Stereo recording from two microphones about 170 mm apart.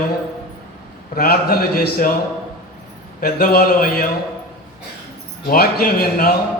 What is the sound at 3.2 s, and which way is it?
Speech, 60° left (ahead or behind).